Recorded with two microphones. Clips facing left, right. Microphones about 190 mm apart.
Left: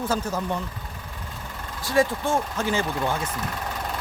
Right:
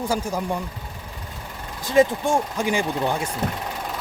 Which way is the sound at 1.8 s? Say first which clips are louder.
Right 4 dB; 20° right (ahead or behind).